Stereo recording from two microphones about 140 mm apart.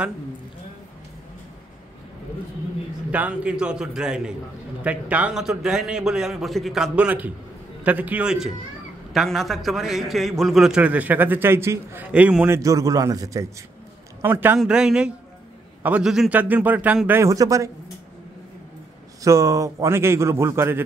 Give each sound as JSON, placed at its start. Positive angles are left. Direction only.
{"t": 3.1, "sound": "a man's voice", "side_deg": -10}
{"t": 12.4, "sound": "a man's voice", "side_deg": -20}
{"t": 14.2, "sound": "a man's voice", "side_deg": -15}
{"t": 14.6, "sound": "a man's voice", "side_deg": -5}
{"t": 17.2, "sound": "a man's voice", "side_deg": -25}
{"t": 19.2, "sound": "a man's voice", "side_deg": -25}